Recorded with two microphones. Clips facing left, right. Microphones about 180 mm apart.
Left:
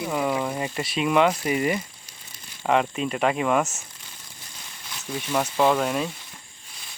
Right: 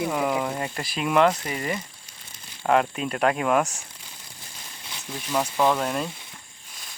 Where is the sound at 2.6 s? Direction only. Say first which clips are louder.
Even; centre (ahead or behind).